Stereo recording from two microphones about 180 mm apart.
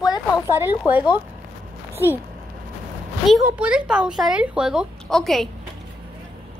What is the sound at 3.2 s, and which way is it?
Speech, 5° right (ahead or behind).